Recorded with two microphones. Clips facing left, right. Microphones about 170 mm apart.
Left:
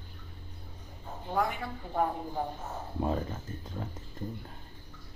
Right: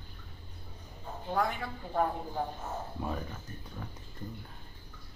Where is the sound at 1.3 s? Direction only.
10° left (ahead or behind).